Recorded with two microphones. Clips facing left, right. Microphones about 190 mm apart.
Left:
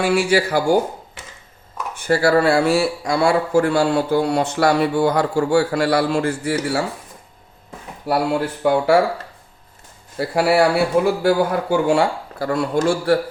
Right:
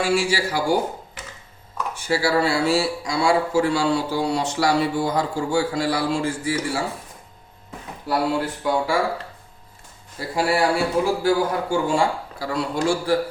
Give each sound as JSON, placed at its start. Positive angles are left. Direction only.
{"t": 0.0, "sound": "a man's voice", "side_deg": 60}
{"t": 2.0, "sound": "a man's voice", "side_deg": 55}
{"t": 8.6, "sound": "a man's voice", "side_deg": 60}
{"t": 10.2, "sound": "a man's voice", "side_deg": 65}